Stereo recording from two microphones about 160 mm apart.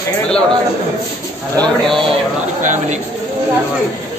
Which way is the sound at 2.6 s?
50° right (ahead or behind).